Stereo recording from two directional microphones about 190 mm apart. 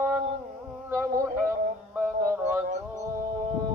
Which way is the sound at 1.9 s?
10° right (ahead or behind).